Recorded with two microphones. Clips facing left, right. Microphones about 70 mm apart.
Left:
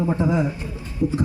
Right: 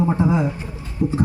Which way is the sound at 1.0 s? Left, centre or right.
Right.